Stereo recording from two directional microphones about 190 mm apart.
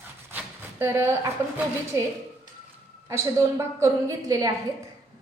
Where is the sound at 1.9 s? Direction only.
15° right (ahead or behind).